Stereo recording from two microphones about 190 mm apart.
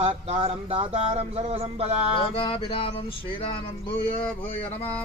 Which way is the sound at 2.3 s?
30° left (ahead or behind).